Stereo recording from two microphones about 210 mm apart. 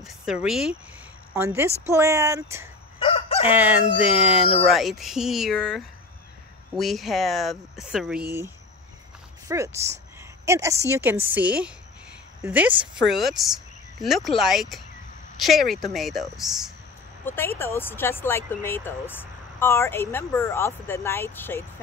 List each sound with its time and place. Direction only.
0.0 s a woman's voice: 5° right (ahead or behind)
3.0 s crowing: 30° left (ahead or behind)
3.4 s a woman's voice: 10° right (ahead or behind)
4.4 s speech: 30° left (ahead or behind)
4.6 s speech: centre (ahead or behind)
9.5 s a woman's voice: 15° right (ahead or behind)
17.2 s speech: 10° left (ahead or behind)